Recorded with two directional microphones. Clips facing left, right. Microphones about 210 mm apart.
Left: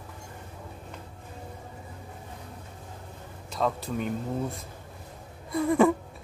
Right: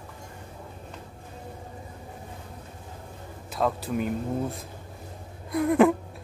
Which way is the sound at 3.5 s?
5° right (ahead or behind).